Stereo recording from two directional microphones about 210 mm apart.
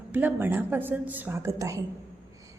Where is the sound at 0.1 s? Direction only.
10° right (ahead or behind).